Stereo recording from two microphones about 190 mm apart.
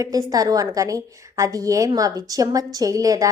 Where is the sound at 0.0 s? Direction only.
20° right (ahead or behind).